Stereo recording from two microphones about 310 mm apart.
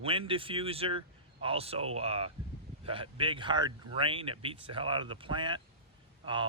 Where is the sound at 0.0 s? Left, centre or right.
Centre.